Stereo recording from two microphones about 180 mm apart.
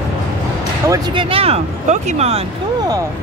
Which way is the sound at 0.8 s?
20° right (ahead or behind).